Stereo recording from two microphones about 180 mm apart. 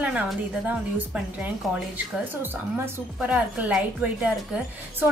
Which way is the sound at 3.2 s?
10° right (ahead or behind).